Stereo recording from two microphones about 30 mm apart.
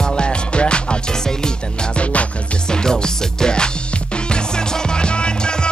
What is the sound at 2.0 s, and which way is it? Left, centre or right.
Music, left.